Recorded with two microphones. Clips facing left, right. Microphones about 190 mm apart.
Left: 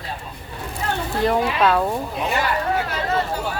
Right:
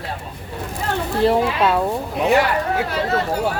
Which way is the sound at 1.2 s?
25° right (ahead or behind).